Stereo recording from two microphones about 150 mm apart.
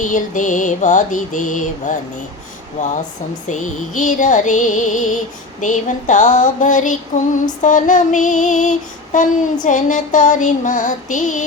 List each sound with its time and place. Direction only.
0.0 s mantra: 60° left (ahead or behind)